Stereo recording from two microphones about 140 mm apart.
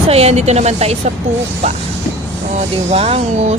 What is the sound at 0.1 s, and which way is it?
Speech, 50° right (ahead or behind).